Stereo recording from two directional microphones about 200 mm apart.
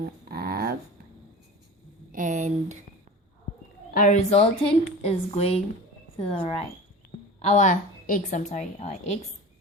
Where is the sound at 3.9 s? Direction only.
35° left (ahead or behind).